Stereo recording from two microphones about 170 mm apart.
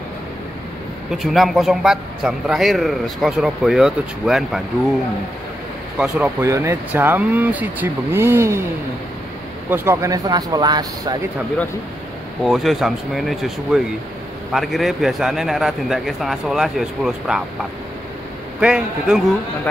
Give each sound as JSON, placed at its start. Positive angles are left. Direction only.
{"t": 1.1, "sound": "a man's voice", "side_deg": 0}
{"t": 5.9, "sound": "a man's voice", "side_deg": -5}
{"t": 6.4, "sound": "speech", "side_deg": -15}
{"t": 9.7, "sound": "speech", "side_deg": -15}
{"t": 12.4, "sound": "a man's voice", "side_deg": 0}
{"t": 18.6, "sound": "a man's voice", "side_deg": -5}